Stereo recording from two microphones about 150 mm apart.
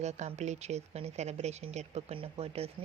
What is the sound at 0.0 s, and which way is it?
Speech, 50° right (ahead or behind).